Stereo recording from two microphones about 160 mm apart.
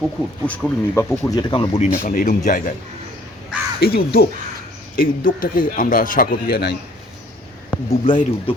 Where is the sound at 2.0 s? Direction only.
60° left (ahead or behind).